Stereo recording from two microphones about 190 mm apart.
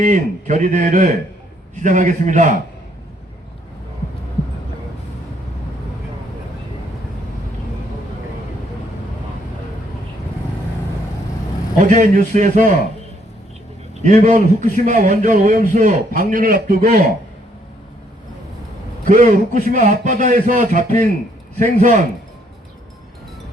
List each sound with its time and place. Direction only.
0.0 s a man's voice: 40° right (ahead or behind)
11.9 s a man's voice: 40° right (ahead or behind)
14.0 s a man's voice: 40° right (ahead or behind)
19.0 s a man's voice: 45° right (ahead or behind)